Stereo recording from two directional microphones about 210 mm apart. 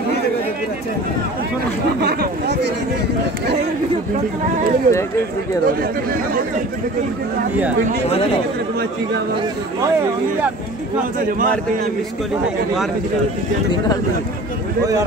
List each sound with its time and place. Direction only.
2.0 s a sound: 50° right (ahead or behind)
4.9 s speech: 45° right (ahead or behind)
11.1 s a man's voice: 40° right (ahead or behind)